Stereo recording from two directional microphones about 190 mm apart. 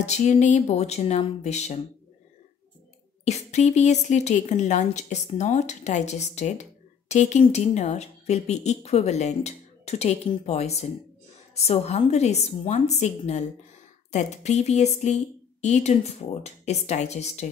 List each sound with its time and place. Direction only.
0.0 s a woman's voice: 35° left (ahead or behind)
3.3 s a woman's voice: 35° left (ahead or behind)